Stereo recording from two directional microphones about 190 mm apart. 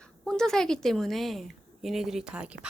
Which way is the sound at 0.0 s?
5° left (ahead or behind).